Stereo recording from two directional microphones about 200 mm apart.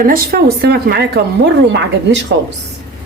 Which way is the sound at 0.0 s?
50° right (ahead or behind).